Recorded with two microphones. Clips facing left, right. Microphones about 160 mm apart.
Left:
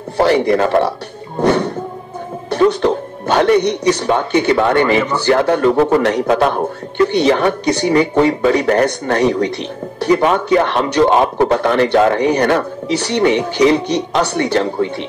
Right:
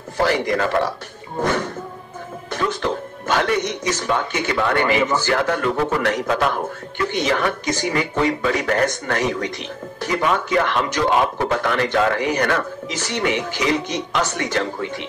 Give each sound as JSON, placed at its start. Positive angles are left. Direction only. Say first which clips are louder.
{"t": 0.2, "sound": "a man's voice", "louder": "left 7 dB", "side_deg": 35}